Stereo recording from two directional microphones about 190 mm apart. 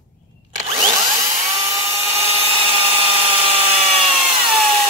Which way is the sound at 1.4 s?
35° right (ahead or behind).